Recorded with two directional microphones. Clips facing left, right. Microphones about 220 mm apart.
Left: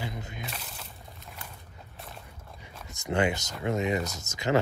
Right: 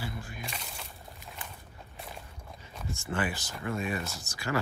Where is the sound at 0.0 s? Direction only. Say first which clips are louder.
Left 2 dB; 20° left (ahead or behind).